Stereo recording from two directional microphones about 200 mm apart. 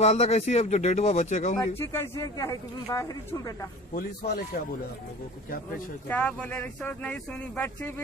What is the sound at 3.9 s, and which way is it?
Speech, 50° left (ahead or behind).